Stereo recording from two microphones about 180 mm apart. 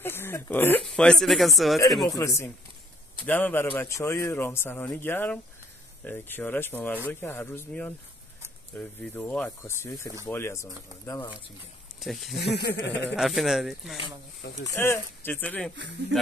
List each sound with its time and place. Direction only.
0.0 s speech: 10° left (ahead or behind)
2.0 s a man's voice: 15° left (ahead or behind)
12.0 s speech: centre (ahead or behind)
12.4 s speech: 70° left (ahead or behind)
13.1 s speech: centre (ahead or behind)
14.6 s a man's voice: 10° left (ahead or behind)